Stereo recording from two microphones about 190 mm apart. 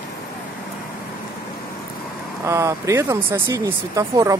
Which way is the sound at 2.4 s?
15° right (ahead or behind).